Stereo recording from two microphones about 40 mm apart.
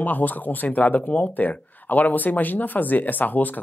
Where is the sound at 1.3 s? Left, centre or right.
Left.